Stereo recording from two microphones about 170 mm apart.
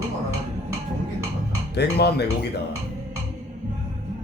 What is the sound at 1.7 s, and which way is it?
Speech, 75° left (ahead or behind).